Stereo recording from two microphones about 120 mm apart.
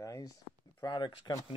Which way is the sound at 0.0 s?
30° left (ahead or behind).